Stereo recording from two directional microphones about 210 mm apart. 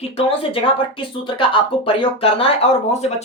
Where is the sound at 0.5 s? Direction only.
25° left (ahead or behind).